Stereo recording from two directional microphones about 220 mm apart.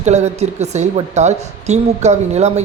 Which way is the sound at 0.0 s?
30° right (ahead or behind).